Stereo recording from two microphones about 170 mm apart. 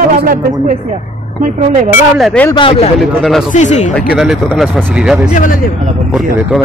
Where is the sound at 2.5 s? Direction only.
30° left (ahead or behind).